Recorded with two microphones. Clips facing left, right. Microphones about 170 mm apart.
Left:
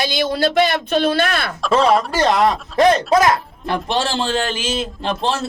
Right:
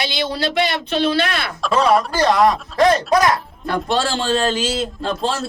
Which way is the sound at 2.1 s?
25° left (ahead or behind).